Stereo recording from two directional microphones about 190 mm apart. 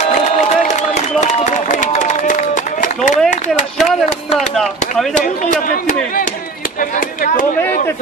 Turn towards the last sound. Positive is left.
turn(degrees=45)  # may be behind; listen again after turning